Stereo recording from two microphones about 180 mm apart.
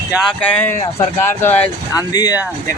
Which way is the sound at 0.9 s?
10° left (ahead or behind).